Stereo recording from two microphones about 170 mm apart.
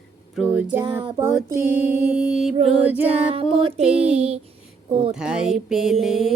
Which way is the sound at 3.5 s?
35° right (ahead or behind).